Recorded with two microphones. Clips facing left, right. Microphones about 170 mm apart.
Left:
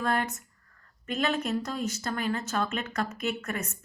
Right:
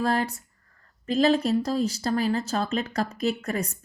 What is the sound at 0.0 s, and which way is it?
A woman's voice, 35° right (ahead or behind).